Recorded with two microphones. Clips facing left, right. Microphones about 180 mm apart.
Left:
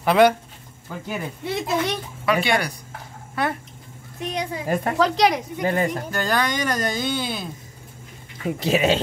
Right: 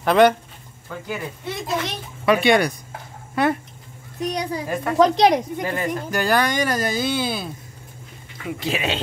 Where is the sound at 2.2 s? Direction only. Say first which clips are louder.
Right 5 dB; 20° right (ahead or behind).